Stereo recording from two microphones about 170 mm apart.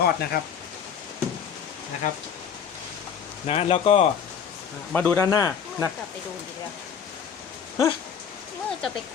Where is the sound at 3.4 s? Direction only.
35° left (ahead or behind).